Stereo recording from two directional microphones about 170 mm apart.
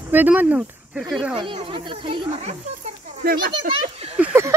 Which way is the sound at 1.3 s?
30° right (ahead or behind).